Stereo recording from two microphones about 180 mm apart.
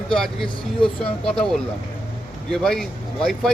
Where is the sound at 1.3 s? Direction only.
5° left (ahead or behind).